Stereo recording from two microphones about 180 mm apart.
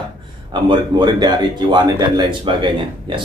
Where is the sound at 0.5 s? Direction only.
25° right (ahead or behind).